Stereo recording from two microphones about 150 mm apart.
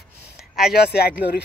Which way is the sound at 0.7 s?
90° left.